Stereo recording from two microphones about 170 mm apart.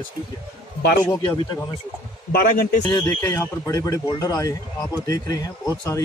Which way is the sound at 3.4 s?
20° left (ahead or behind).